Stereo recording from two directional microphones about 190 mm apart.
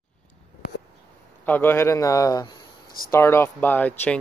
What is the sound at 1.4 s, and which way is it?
Speech, 10° left (ahead or behind).